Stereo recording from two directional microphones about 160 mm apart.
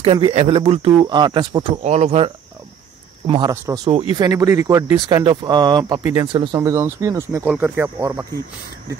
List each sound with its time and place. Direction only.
0.0 s speech: 35° right (ahead or behind)
1.8 s speech: 45° right (ahead or behind); by 8.4 s 20° right (ahead or behind)